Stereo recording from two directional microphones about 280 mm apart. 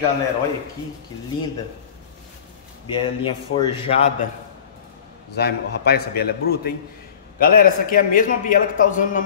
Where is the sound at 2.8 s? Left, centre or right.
Centre.